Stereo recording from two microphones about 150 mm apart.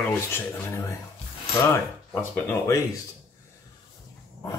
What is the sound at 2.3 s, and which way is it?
Speech, 15° left (ahead or behind).